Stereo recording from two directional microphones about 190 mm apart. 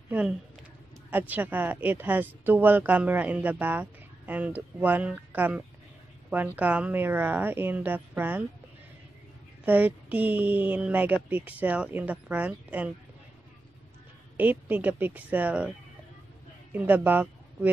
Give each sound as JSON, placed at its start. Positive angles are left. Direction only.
{"t": 1.1, "sound": "speech", "side_deg": -10}
{"t": 9.7, "sound": "speech", "side_deg": -10}
{"t": 14.3, "sound": "speech", "side_deg": -10}
{"t": 16.7, "sound": "speech", "side_deg": -10}